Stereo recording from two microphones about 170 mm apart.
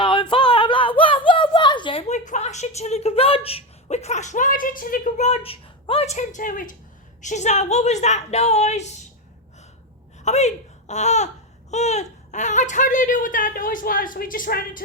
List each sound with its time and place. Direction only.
0.0 s a sound: 30° left (ahead or behind); by 6.7 s 50° left (ahead or behind)
7.2 s a woman's voice: 45° left (ahead or behind)
10.2 s speech: 45° left (ahead or behind)